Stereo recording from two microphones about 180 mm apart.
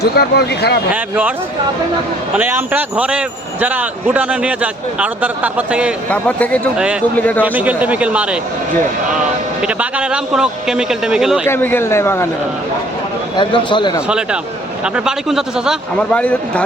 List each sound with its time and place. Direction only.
0.0 s speech: 65° left (ahead or behind)
2.3 s a man's voice: 10° right (ahead or behind)
6.1 s a man's voice: 5° left (ahead or behind)
7.4 s a man's voice: 10° right (ahead or behind)
9.6 s speech: 5° right (ahead or behind)
11.4 s a man's voice: 10° left (ahead or behind)
13.3 s a man's voice: 25° left (ahead or behind)
14.1 s speech: 5° right (ahead or behind)
16.1 s a man's voice: 5° left (ahead or behind)